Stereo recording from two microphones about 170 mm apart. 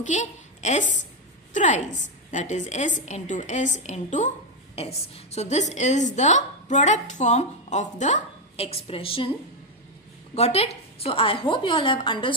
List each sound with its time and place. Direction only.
0.0 s a woman's voice: 45° left (ahead or behind)
10.3 s a woman's voice: 35° left (ahead or behind)